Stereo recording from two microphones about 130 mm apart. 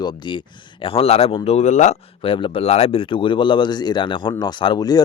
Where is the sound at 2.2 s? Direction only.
40° left (ahead or behind).